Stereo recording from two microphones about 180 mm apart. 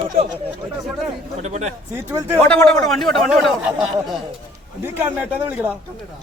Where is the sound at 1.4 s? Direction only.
40° right (ahead or behind).